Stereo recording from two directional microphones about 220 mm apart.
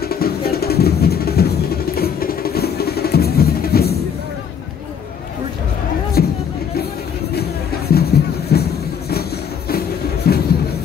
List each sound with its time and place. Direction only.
0.0 s music: 45° left (ahead or behind)
6.2 s music: 45° left (ahead or behind)
7.9 s music: 45° left (ahead or behind)
9.7 s music: 45° left (ahead or behind)